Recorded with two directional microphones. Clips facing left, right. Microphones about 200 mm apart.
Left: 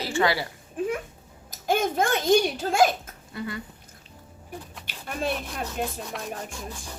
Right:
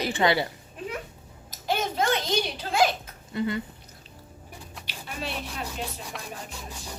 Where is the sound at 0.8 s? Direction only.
50° left (ahead or behind).